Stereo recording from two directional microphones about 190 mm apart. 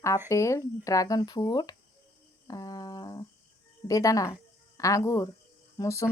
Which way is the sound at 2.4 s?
20° left (ahead or behind).